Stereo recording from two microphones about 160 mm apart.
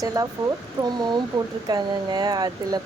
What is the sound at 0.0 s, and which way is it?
Speech, 20° right (ahead or behind).